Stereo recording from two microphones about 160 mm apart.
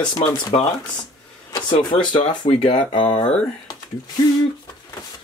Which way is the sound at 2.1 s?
30° left (ahead or behind).